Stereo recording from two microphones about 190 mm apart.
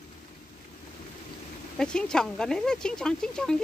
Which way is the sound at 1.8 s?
5° left (ahead or behind).